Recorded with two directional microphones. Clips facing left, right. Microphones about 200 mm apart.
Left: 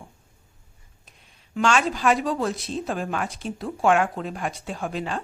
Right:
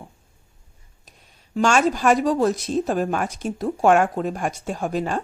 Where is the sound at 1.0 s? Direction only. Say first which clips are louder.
Right 4 dB; 40° right (ahead or behind).